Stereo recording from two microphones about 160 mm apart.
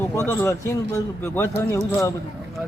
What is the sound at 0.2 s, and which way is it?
A man's voice, 15° left (ahead or behind).